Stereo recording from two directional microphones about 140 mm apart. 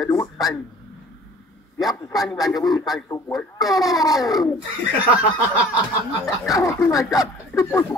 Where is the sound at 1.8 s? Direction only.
25° left (ahead or behind).